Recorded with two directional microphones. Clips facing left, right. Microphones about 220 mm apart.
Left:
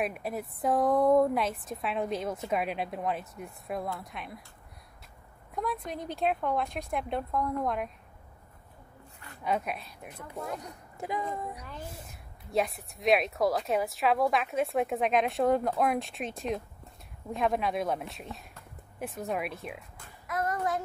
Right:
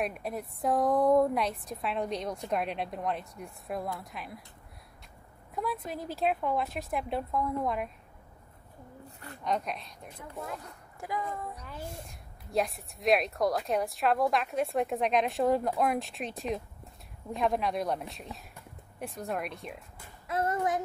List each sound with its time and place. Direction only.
0.0 s a woman's voice: 5° left (ahead or behind)
5.5 s a woman's voice: centre (ahead or behind)
9.4 s a woman's voice: 5° left (ahead or behind)
10.6 s speech: 20° left (ahead or behind)
11.9 s a woman's voice: centre (ahead or behind)
20.2 s child singing: 25° right (ahead or behind)